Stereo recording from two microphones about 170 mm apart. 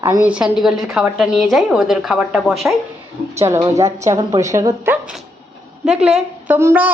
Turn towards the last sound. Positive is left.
turn(degrees=-10)  # may be behind; listen again after turning